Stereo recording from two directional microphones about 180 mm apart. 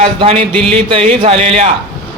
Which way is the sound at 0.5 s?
5° left (ahead or behind).